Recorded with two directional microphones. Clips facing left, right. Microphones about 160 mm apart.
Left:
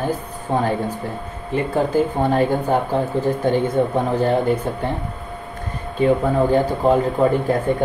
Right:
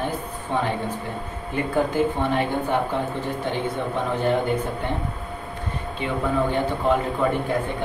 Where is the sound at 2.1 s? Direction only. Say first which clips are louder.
Left 5 dB; 40° left (ahead or behind).